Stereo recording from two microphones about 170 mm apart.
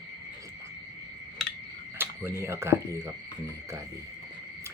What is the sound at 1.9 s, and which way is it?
Speech, 10° right (ahead or behind).